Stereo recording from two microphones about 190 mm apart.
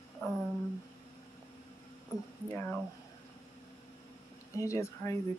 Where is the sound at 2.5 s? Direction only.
5° left (ahead or behind).